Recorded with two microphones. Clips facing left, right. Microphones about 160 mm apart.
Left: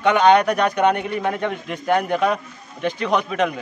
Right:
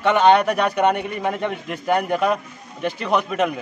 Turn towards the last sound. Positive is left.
turn(degrees=-5)  # may be behind; listen again after turning